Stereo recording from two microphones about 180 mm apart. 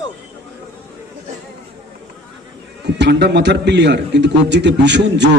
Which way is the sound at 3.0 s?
70° right (ahead or behind).